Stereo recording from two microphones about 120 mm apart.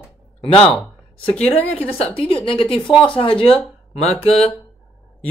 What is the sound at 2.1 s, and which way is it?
Speech, 45° left (ahead or behind).